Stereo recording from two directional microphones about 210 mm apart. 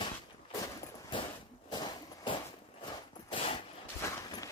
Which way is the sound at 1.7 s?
20° left (ahead or behind).